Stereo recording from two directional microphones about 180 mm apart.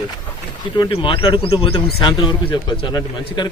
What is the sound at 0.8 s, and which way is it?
A man's voice, 30° left (ahead or behind).